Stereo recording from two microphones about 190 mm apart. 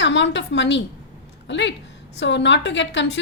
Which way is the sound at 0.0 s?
70° left (ahead or behind).